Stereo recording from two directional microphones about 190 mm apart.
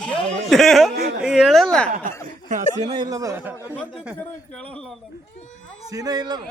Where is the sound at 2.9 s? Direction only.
20° right (ahead or behind).